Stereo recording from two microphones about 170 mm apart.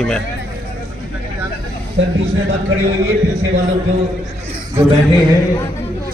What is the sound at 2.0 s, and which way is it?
Speech, 90° right.